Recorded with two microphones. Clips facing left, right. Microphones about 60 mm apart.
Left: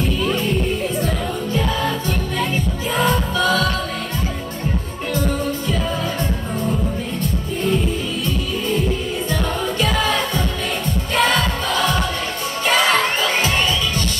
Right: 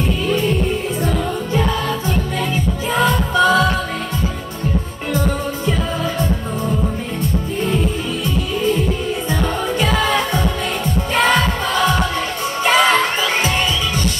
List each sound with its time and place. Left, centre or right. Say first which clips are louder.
3.0 s music: right 4 dB; right
9.3 s music: right 2 dB; centre
12.6 s children shouting: right 3 dB; centre